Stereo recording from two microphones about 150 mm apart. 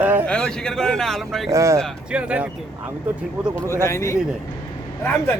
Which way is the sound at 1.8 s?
5° right (ahead or behind).